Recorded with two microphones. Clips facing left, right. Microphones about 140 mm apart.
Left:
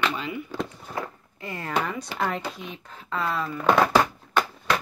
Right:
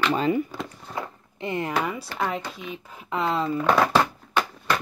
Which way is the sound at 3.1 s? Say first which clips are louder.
Right 3 dB; 20° right (ahead or behind).